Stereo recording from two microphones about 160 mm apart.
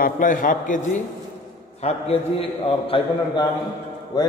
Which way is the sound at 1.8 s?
40° left (ahead or behind).